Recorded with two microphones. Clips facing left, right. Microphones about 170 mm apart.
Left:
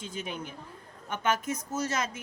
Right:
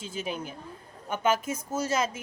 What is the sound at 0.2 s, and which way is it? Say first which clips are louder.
A woman's voice: right 5 dB; 30° right (ahead or behind).